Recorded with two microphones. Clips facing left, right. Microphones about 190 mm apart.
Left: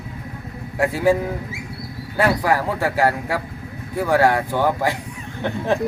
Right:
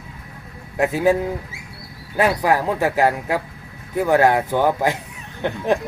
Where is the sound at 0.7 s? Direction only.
20° right (ahead or behind).